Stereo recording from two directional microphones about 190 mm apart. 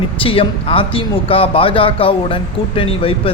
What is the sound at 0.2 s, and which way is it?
Speech, 30° left (ahead or behind).